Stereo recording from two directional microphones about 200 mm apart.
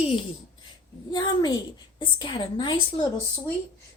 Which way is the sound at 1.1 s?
20° left (ahead or behind).